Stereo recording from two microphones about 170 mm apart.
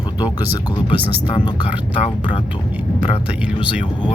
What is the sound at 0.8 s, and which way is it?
Speech, 30° left (ahead or behind).